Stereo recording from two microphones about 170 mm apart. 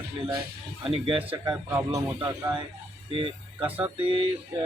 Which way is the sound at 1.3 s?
25° right (ahead or behind).